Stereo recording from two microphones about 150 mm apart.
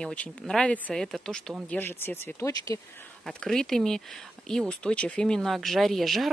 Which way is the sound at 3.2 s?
5° left (ahead or behind).